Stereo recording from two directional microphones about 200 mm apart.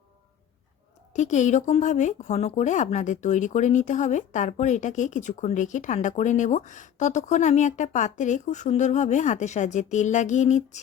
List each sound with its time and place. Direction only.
1.1 s speech: 35° left (ahead or behind)